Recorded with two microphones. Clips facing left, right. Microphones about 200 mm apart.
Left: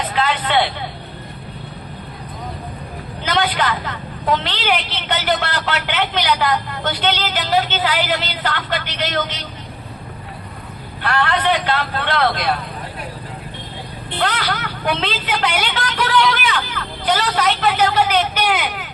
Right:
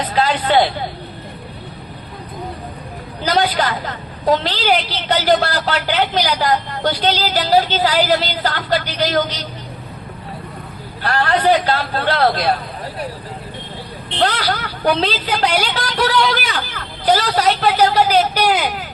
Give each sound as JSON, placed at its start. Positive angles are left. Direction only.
{"t": 0.1, "sound": "speech", "side_deg": -35}
{"t": 3.2, "sound": "a woman's voice", "side_deg": -35}
{"t": 11.0, "sound": "a woman's voice", "side_deg": -35}
{"t": 14.2, "sound": "a woman's voice", "side_deg": -40}